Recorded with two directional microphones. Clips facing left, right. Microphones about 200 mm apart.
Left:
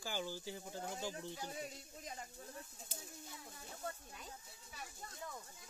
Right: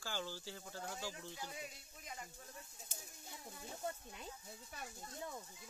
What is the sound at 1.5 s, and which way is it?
Speech, 35° left (ahead or behind).